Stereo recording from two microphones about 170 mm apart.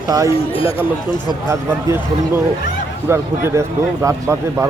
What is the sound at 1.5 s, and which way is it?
Speech, 15° right (ahead or behind).